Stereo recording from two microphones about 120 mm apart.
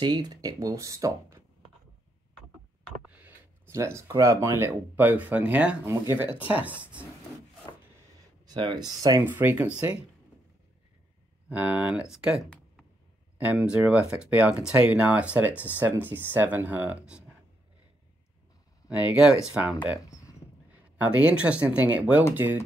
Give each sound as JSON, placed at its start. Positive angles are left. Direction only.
{"t": 0.0, "sound": "speech", "side_deg": -35}
{"t": 3.2, "sound": "a sound", "side_deg": -15}
{"t": 3.7, "sound": "speech", "side_deg": -25}
{"t": 8.5, "sound": "speech", "side_deg": -40}
{"t": 9.2, "sound": "speech", "side_deg": -15}
{"t": 11.4, "sound": "speech", "side_deg": -10}
{"t": 18.9, "sound": "speech", "side_deg": -10}
{"t": 21.0, "sound": "speech", "side_deg": -10}